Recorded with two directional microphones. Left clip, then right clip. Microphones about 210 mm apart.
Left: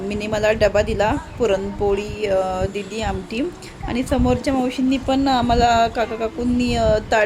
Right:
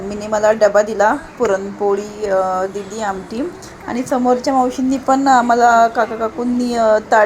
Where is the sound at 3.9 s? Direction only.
Centre (ahead or behind).